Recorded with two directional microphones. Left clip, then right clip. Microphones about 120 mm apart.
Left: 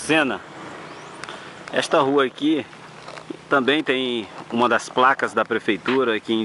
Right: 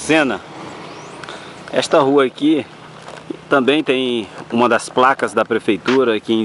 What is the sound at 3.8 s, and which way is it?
Speech, 45° right (ahead or behind).